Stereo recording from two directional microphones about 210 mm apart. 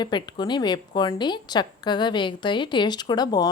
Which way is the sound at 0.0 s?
20° left (ahead or behind).